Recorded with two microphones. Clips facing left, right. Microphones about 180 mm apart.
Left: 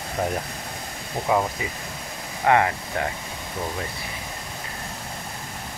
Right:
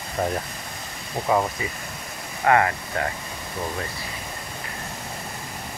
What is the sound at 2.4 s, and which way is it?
Speech, 15° left (ahead or behind).